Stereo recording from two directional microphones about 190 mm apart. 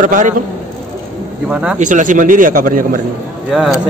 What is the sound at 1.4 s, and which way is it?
Speech, 5° right (ahead or behind).